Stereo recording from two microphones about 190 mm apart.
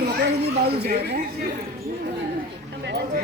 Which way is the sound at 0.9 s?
55° right (ahead or behind).